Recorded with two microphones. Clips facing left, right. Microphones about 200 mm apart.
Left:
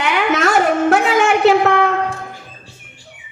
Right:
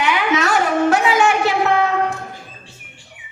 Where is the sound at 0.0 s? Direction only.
55° left (ahead or behind).